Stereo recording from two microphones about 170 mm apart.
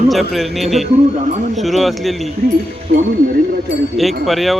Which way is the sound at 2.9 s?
70° right (ahead or behind).